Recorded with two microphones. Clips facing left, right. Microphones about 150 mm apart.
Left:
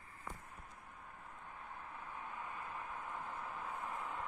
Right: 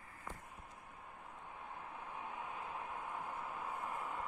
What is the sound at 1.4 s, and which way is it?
Vehicle, 15° right (ahead or behind).